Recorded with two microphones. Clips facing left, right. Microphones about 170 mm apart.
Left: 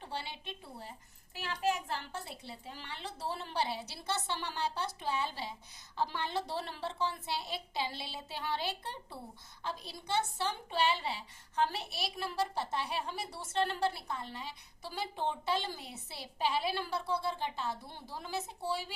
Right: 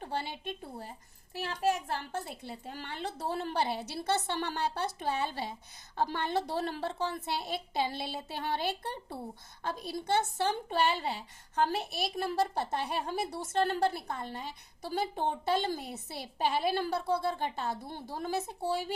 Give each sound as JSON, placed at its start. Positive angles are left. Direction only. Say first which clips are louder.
{"t": 0.0, "sound": "a woman's voice", "louder": "right 6 dB", "side_deg": -50}